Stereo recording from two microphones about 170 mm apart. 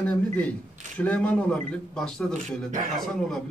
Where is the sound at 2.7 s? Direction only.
50° right (ahead or behind).